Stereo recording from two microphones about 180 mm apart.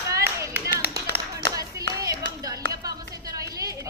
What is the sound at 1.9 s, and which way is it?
Clapping, 20° right (ahead or behind).